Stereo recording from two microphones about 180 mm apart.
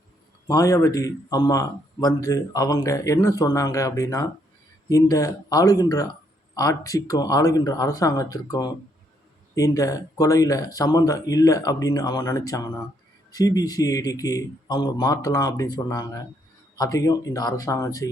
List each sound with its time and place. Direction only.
0.4 s speech: 20° left (ahead or behind)